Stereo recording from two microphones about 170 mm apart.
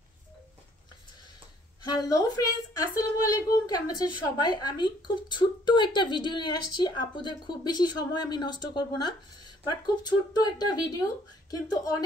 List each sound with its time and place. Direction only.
1.9 s a woman's voice: 20° left (ahead or behind)